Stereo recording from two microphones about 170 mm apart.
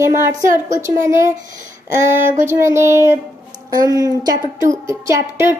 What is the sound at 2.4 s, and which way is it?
A woman's voice, 15° right (ahead or behind).